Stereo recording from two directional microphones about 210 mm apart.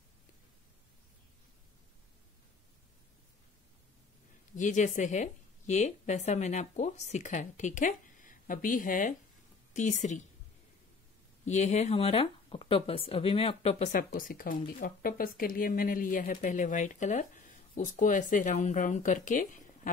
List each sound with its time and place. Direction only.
4.6 s speech: 35° left (ahead or behind)
11.4 s speech: 35° left (ahead or behind)